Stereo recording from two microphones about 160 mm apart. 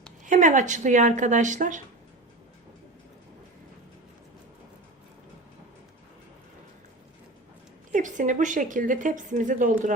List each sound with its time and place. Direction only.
0.3 s a woman's voice: 50° right (ahead or behind)
7.9 s a woman's voice: 55° right (ahead or behind)